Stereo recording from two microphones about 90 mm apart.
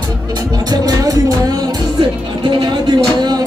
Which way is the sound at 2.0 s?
70° right (ahead or behind).